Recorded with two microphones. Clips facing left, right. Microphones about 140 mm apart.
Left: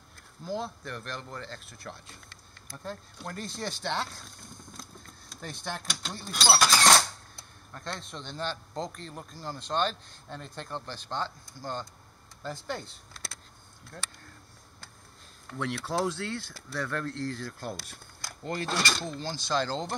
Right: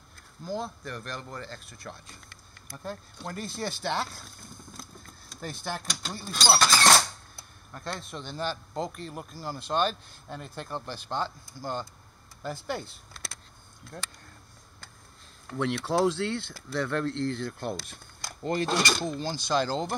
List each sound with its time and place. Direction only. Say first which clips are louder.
0.5 s speech: right 1 dB; centre (ahead or behind)
15.6 s speech: right 5 dB; 25° right (ahead or behind)